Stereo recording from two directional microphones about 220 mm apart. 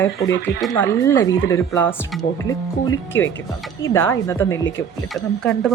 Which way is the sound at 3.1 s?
60° left (ahead or behind).